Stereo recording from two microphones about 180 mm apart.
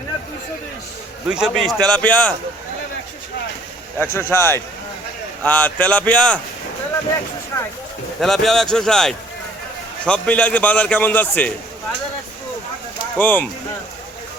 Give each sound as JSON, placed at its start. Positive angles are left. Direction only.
{"t": 1.3, "sound": "a man's voice", "side_deg": -5}
{"t": 3.9, "sound": "a man's voice", "side_deg": 15}
{"t": 8.2, "sound": "a man's voice", "side_deg": 0}
{"t": 13.1, "sound": "a man's voice", "side_deg": 10}